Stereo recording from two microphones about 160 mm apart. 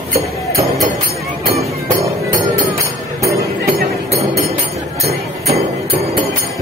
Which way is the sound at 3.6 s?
75° right (ahead or behind).